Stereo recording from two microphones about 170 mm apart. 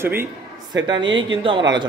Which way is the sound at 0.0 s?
15° right (ahead or behind).